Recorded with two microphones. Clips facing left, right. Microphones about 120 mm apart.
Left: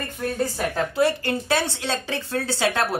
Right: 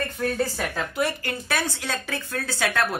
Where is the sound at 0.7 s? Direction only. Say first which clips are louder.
Left 6 dB; 30° left (ahead or behind).